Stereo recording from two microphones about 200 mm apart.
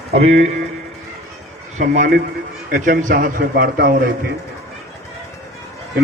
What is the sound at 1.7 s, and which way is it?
A man's voice, 35° right (ahead or behind).